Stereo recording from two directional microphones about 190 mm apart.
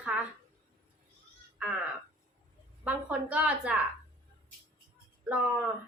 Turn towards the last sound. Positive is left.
turn(degrees=-5)  # may be behind; listen again after turning